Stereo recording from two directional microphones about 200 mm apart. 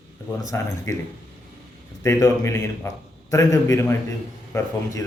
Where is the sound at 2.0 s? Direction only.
15° left (ahead or behind).